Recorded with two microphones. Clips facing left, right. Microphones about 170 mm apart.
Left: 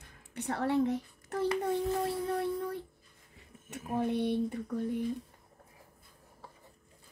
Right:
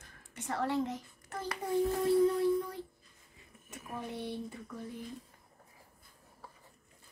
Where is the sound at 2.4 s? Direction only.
65° left (ahead or behind).